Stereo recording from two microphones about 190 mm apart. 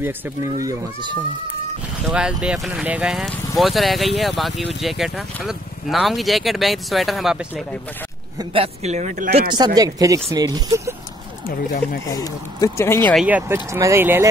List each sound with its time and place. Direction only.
0.6 s speech: 20° right (ahead or behind)
2.0 s speech: 5° right (ahead or behind)
8.4 s speech: 30° right (ahead or behind)
9.8 s speech: 20° right (ahead or behind)
11.4 s speech: 50° left (ahead or behind)
12.1 s speech: 20° left (ahead or behind)
13.1 s speech: 5° right (ahead or behind)
13.4 s speech: 15° right (ahead or behind)